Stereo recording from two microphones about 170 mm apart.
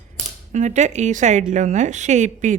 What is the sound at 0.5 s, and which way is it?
A woman's voice, 45° right (ahead or behind).